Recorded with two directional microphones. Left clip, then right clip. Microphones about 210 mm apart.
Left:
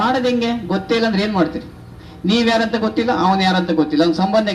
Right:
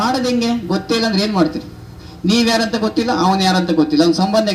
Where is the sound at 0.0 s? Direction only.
60° right (ahead or behind).